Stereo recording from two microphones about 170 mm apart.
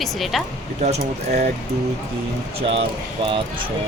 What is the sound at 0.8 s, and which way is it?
Speech, 40° right (ahead or behind).